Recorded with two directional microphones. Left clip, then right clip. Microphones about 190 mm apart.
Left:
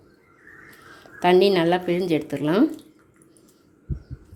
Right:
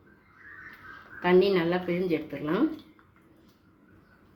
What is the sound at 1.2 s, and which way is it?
Speech, 55° left (ahead or behind).